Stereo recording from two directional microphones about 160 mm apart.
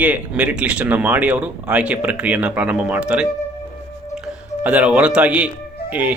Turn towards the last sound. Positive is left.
turn(degrees=-10)  # may be behind; listen again after turning